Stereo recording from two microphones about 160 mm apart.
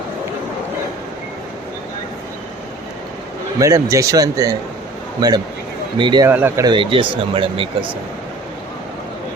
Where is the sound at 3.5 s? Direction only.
20° right (ahead or behind).